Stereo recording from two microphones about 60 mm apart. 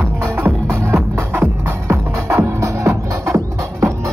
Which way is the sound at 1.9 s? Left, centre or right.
Right.